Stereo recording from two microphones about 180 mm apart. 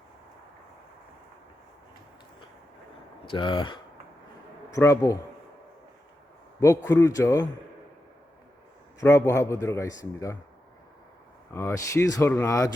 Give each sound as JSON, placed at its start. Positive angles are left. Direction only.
{"t": 3.2, "sound": "a man's voice", "side_deg": 25}
{"t": 6.6, "sound": "speech", "side_deg": 15}
{"t": 9.0, "sound": "speech", "side_deg": 15}
{"t": 11.5, "sound": "speech", "side_deg": 15}